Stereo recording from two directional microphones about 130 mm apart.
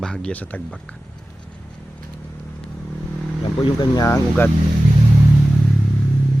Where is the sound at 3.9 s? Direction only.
25° left (ahead or behind).